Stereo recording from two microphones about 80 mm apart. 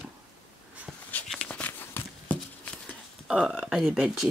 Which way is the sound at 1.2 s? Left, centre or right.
Centre.